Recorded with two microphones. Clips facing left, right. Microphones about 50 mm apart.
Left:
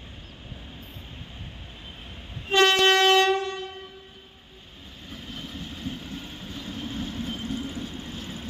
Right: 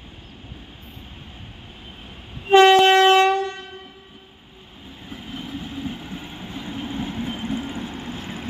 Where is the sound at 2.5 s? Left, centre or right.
Centre.